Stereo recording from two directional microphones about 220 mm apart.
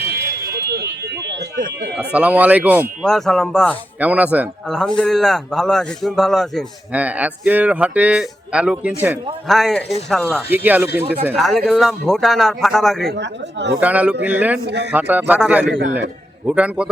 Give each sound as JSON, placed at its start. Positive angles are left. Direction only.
{"t": 1.3, "sound": "speech", "side_deg": -50}
{"t": 2.0, "sound": "a man's voice", "side_deg": -5}
{"t": 13.1, "sound": "speech", "side_deg": -50}
{"t": 13.7, "sound": "speech", "side_deg": -5}
{"t": 16.5, "sound": "a man's voice", "side_deg": -5}